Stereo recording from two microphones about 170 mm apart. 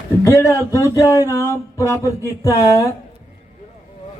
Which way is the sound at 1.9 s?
20° left (ahead or behind).